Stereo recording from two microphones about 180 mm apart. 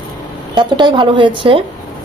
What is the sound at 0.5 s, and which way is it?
A woman's voice, 25° right (ahead or behind).